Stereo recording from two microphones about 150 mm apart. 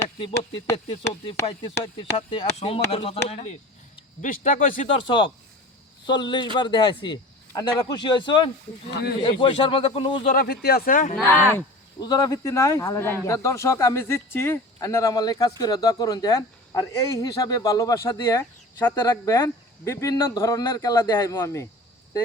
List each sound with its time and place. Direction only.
0.2 s a man's voice: 35° left (ahead or behind)
4.2 s speech: 60° left (ahead or behind)
4.9 s a man's voice: 35° left (ahead or behind)
10.3 s speech: 90° left; by 11.2 s 65° left (ahead or behind)
11.9 s speech: 25° left (ahead or behind)